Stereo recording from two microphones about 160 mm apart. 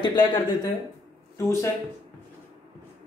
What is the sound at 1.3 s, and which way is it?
Speech, 15° left (ahead or behind).